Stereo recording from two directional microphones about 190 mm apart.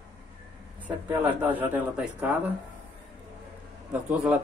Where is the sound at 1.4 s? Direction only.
10° right (ahead or behind).